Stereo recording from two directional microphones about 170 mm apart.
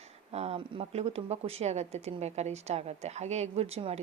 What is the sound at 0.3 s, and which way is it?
Speech, 35° right (ahead or behind).